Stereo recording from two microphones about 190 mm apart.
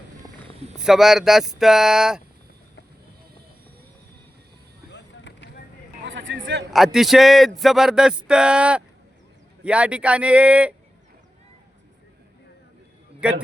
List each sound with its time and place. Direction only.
0.8 s speech: centre (ahead or behind)
4.9 s vehicle: 65° left (ahead or behind)
6.1 s a sound: 75° right (ahead or behind)
6.7 s speech: centre (ahead or behind)
13.2 s speech: 5° right (ahead or behind)